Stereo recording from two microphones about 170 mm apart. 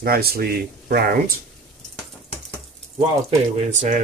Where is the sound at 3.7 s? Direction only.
45° right (ahead or behind).